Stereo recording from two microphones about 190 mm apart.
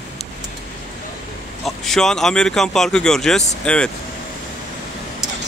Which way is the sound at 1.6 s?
Centre (ahead or behind).